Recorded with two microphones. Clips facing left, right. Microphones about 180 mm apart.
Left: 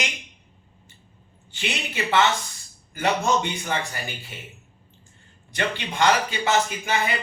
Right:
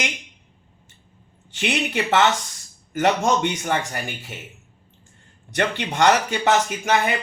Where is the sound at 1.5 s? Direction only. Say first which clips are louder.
Right 6 dB; 80° right.